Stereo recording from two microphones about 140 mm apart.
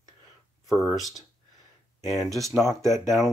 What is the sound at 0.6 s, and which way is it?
Speech, centre (ahead or behind).